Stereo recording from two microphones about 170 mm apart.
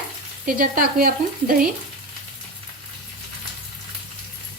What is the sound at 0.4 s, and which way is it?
Speech, 55° right (ahead or behind).